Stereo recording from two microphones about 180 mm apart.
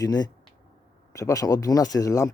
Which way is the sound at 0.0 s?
20° left (ahead or behind).